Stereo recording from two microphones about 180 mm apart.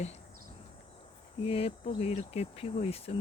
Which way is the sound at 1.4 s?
30° left (ahead or behind).